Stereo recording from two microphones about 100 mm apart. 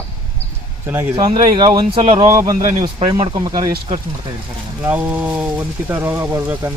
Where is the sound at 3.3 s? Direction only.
45° right (ahead or behind).